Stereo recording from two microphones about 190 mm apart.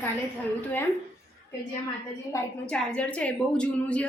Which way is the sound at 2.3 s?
15° left (ahead or behind).